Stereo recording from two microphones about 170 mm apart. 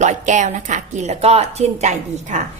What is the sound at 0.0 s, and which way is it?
A woman's voice, 45° right (ahead or behind).